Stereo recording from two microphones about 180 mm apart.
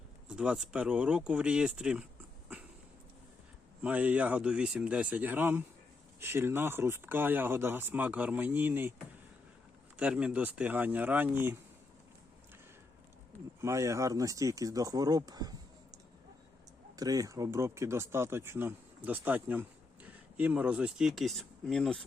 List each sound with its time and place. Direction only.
0.3 s speech: 5° right (ahead or behind)
3.8 s speech: 10° right (ahead or behind)
10.0 s speech: 5° right (ahead or behind)
13.6 s speech: 15° right (ahead or behind)
17.0 s speech: 20° right (ahead or behind); by 22.0 s 5° left (ahead or behind)